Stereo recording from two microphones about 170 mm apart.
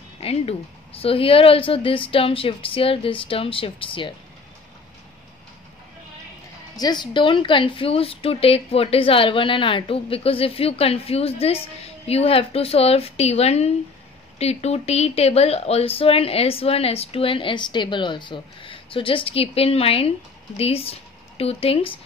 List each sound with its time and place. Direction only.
0.2 s a woman's voice: 35° left (ahead or behind)
6.8 s a woman's voice: 25° left (ahead or behind)